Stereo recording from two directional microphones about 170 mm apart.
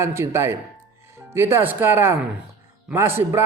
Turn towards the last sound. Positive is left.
turn(degrees=-15)  # may be behind; listen again after turning